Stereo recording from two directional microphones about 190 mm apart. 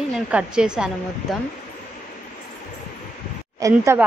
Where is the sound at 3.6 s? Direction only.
15° right (ahead or behind).